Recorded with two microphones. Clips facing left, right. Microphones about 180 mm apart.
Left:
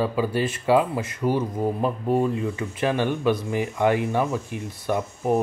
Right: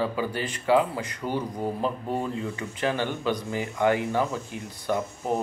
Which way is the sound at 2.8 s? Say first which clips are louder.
Left 4 dB; 25° left (ahead or behind).